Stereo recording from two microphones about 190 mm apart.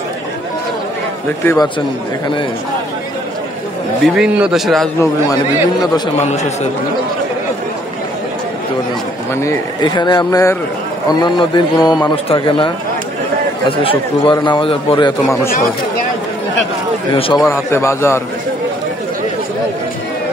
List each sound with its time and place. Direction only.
1.4 s speech: 10° left (ahead or behind)
4.0 s a man's voice: 5° right (ahead or behind)
6.2 s a man's voice: 35° left (ahead or behind)
9.3 s a man's voice: 15° left (ahead or behind)
17.1 s a man's voice: 25° left (ahead or behind)
17.5 s speech: 15° left (ahead or behind)